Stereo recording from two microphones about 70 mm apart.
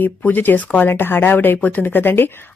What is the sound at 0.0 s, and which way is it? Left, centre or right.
Speech, left.